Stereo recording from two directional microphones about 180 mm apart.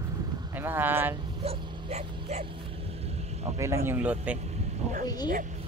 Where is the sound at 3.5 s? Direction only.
15° right (ahead or behind).